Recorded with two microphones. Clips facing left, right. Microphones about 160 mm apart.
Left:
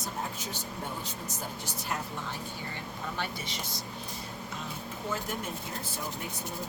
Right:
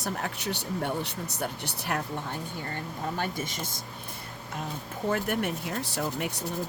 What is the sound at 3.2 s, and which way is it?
Speech, 50° right (ahead or behind).